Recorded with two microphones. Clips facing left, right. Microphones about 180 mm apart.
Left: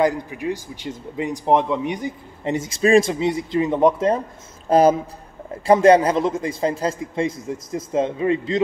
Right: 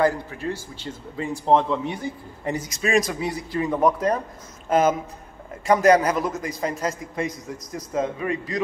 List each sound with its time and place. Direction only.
0.0 s a man's voice: 15° left (ahead or behind)
4.6 s a man's voice: 35° left (ahead or behind)